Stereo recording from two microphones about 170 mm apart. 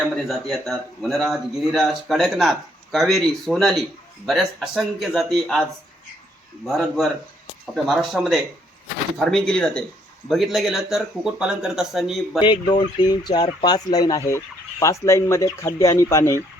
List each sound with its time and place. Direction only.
0.0 s a man's voice: centre (ahead or behind)
6.7 s a man's voice: centre (ahead or behind)
12.5 s speech: 25° left (ahead or behind)